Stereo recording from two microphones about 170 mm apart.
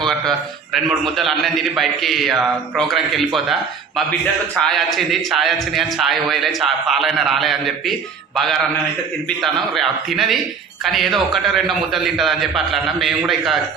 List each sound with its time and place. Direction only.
1.0 s a man's voice: centre (ahead or behind)
9.4 s a man's voice: centre (ahead or behind)